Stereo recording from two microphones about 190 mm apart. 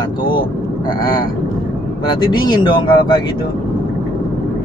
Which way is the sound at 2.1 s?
20° left (ahead or behind).